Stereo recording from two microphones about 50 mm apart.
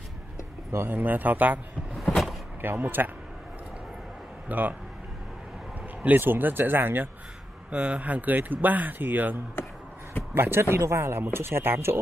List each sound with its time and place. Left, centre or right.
0.8 s speech: right
2.0 s vehicle: centre
2.6 s speech: right
4.5 s speech: right
6.0 s speech: right
7.7 s speech: right
10.3 s speech: right